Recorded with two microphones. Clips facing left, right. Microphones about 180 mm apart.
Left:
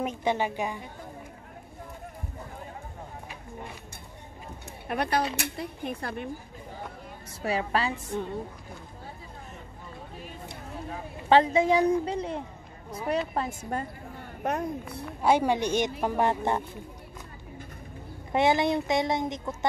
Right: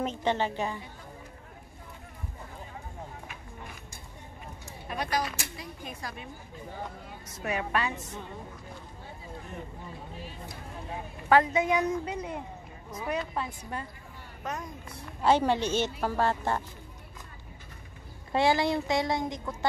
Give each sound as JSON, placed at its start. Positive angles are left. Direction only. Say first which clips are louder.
{"t": 0.0, "sound": "a woman's voice", "louder": "left 1 dB", "side_deg": 10}
{"t": 4.8, "sound": "speech", "louder": "left 4 dB", "side_deg": 60}
{"t": 7.4, "sound": "a woman's voice", "louder": "left 3 dB", "side_deg": 30}
{"t": 11.2, "sound": "a woman's voice", "louder": "left 3 dB", "side_deg": 25}
{"t": 13.3, "sound": "speech", "louder": "left 4 dB", "side_deg": 45}
{"t": 14.4, "sound": "speech", "louder": "left 8 dB", "side_deg": 60}
{"t": 15.2, "sound": "a woman's voice", "louder": "left 1 dB", "side_deg": 10}
{"t": 18.3, "sound": "a woman's voice", "louder": "left 2 dB", "side_deg": 20}